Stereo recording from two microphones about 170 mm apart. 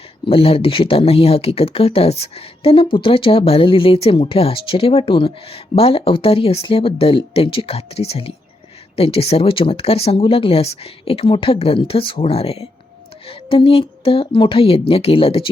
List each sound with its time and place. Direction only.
0.3 s speech: 35° left (ahead or behind)